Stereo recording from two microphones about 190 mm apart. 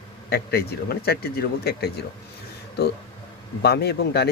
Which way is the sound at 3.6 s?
60° left (ahead or behind).